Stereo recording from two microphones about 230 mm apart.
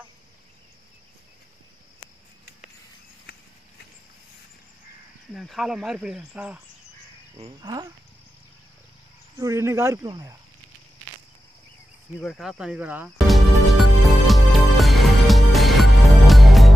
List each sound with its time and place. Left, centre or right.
5.3 s speech: centre
9.4 s speech: centre
12.2 s speech: centre
14.2 s music: centre